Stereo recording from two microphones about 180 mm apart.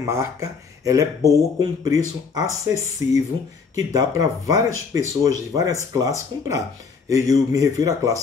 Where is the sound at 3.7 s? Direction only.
20° right (ahead or behind).